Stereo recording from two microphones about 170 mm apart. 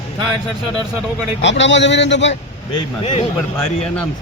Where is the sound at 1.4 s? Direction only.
90° left.